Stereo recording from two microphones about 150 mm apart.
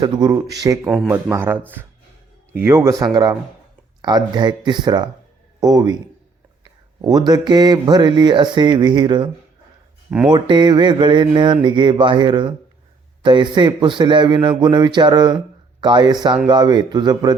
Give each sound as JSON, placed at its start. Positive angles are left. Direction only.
{"t": 0.0, "sound": "a man's voice", "side_deg": -25}
{"t": 7.0, "sound": "speech", "side_deg": -25}
{"t": 10.2, "sound": "a sound", "side_deg": -30}
{"t": 15.8, "sound": "speech", "side_deg": -30}